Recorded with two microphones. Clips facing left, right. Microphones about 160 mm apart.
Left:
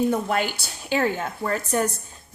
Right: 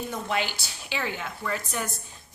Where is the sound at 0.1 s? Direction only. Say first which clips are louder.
Left 6 dB; 50° left (ahead or behind).